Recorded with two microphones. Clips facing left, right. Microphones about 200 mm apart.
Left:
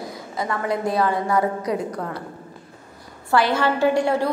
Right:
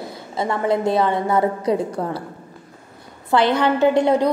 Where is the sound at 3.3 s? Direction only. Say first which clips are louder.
Right 3 dB; 20° right (ahead or behind).